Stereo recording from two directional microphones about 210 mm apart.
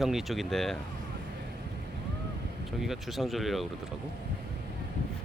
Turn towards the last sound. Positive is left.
turn(degrees=0)  # may be behind; listen again after turning